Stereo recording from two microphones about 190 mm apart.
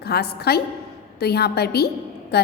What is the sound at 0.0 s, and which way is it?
A woman's voice, 55° left (ahead or behind).